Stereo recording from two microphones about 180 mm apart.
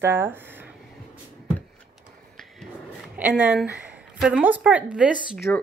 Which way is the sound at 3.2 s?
5° right (ahead or behind).